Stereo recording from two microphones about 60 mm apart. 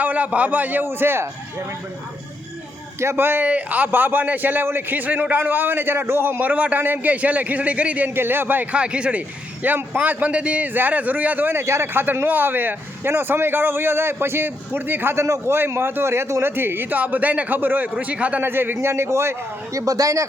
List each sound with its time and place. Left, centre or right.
0.0 s a man's voice: right
0.9 s speech: right
3.0 s speech: right
3.4 s speech: right
6.4 s a man's voice: right
8.1 s speech: right
8.7 s a man's voice: centre
9.6 s a man's voice: right
11.6 s speech: right
18.4 s a man's voice: right
19.7 s speech: right